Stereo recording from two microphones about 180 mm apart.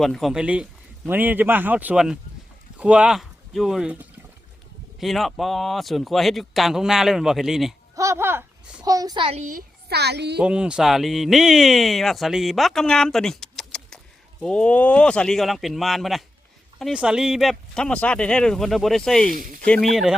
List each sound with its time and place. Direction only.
0.0 s a man's voice: centre (ahead or behind)
7.9 s a sound: 15° right (ahead or behind); by 9.5 s 30° right (ahead or behind)
9.5 s a woman's voice: 55° right (ahead or behind)
10.3 s speech: 5° right (ahead or behind)
19.3 s speech: 50° right (ahead or behind)
19.6 s speech: 5° left (ahead or behind)